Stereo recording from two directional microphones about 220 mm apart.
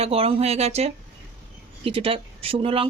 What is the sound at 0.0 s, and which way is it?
Speech, 25° right (ahead or behind).